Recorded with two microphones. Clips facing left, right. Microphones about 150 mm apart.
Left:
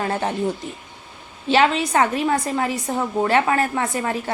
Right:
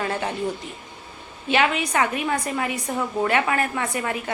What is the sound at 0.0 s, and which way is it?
A woman's voice, 35° left (ahead or behind).